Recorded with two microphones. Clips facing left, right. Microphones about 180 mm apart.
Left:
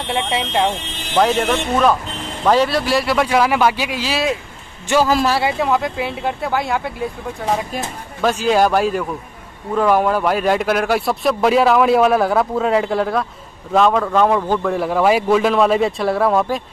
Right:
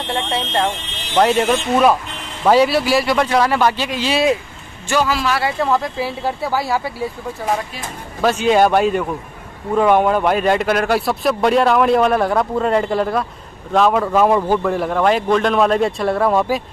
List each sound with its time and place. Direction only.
0.0 s speech: 5° left (ahead or behind)
5.0 s speech: 40° left (ahead or behind)
5.6 s speech: centre (ahead or behind)